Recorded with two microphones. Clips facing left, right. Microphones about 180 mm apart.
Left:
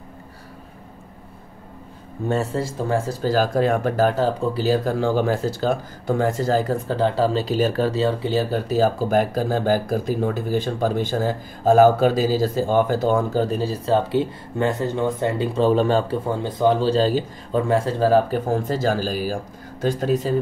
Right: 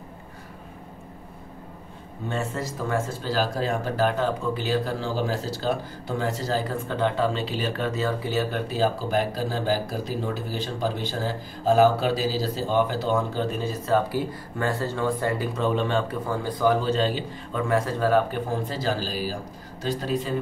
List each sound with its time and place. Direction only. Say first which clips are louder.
2.2 s speech: left 6 dB; 40° left (ahead or behind)
3.2 s speech: left 6 dB; 50° left (ahead or behind)
16.3 s speech: left 2 dB; 25° left (ahead or behind); by 20.3 s 45° left (ahead or behind)